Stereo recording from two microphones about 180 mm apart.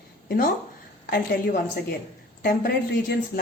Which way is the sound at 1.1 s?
60° left (ahead or behind).